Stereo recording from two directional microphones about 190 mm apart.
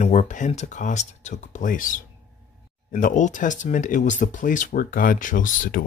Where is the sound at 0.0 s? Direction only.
40° left (ahead or behind).